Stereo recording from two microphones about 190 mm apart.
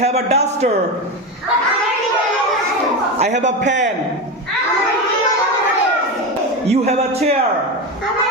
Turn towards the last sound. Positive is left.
turn(degrees=-35)  # may be behind; listen again after turning